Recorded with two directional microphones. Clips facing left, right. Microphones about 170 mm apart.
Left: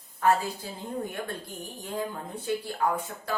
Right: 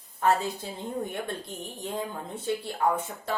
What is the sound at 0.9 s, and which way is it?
Speech, 25° right (ahead or behind).